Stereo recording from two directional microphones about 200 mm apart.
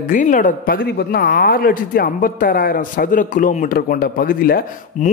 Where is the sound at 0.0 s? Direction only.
40° left (ahead or behind).